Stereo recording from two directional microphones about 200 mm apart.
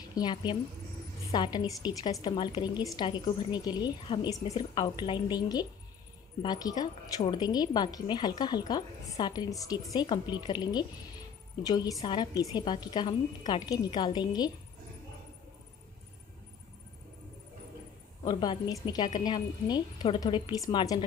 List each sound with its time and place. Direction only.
0.1 s a woman's voice: 20° left (ahead or behind)
18.2 s a woman's voice: 20° left (ahead or behind)